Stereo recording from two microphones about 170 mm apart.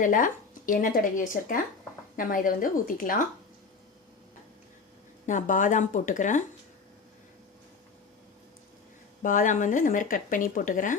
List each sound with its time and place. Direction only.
0.0 s speech: 50° left (ahead or behind)
5.2 s speech: 50° left (ahead or behind)
9.2 s speech: 50° left (ahead or behind)